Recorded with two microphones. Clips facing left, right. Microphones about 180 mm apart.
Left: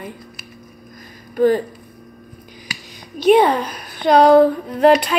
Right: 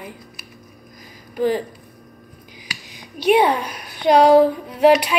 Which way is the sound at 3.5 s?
50° left (ahead or behind).